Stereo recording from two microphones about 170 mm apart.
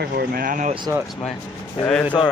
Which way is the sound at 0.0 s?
65° right (ahead or behind).